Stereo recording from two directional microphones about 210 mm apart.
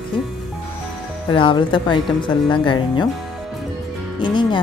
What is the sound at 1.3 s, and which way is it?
Speech, 25° left (ahead or behind).